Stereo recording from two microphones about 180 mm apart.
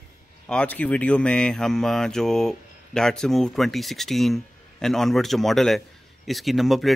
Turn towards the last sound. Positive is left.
turn(degrees=0)  # may be behind; listen again after turning